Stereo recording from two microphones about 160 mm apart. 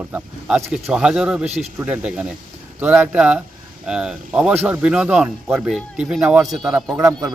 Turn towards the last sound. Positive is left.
turn(degrees=-20)  # may be behind; listen again after turning